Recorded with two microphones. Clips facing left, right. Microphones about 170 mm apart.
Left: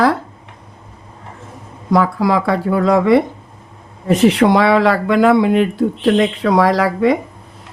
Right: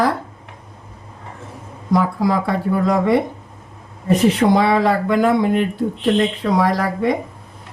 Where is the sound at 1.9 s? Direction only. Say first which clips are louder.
Left 3 dB; 80° left.